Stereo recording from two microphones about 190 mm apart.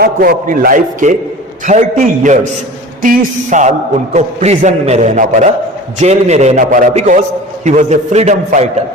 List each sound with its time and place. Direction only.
0.0 s a man's voice: 50° right (ahead or behind)